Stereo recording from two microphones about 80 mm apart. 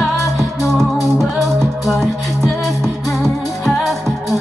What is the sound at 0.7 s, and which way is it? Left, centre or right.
Music, centre.